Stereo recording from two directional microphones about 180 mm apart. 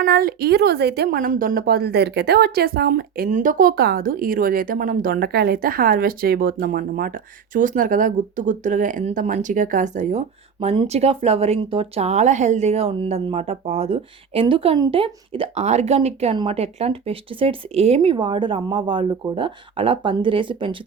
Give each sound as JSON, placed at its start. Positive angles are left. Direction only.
{"t": 0.0, "sound": "a woman's voice", "side_deg": -55}